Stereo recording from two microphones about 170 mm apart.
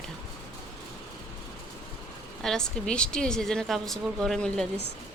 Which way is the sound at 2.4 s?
5° left (ahead or behind).